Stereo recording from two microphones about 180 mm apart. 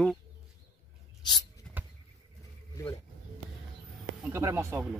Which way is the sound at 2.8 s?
15° left (ahead or behind).